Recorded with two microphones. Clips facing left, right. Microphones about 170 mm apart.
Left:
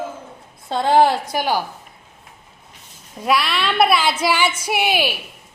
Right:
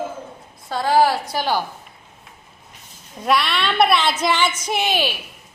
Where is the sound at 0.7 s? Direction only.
25° left (ahead or behind).